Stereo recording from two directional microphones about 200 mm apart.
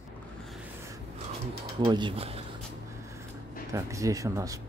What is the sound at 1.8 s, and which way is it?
Speech, 20° right (ahead or behind).